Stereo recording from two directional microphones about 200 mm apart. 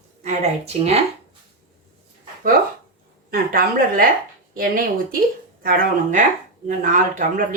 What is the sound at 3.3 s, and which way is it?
A woman's voice, 45° right (ahead or behind).